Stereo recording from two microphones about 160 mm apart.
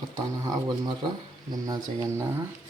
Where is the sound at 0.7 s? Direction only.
25° right (ahead or behind).